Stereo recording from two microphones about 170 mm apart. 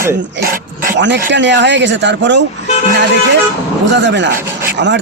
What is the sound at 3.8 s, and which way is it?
Speech, 90° right.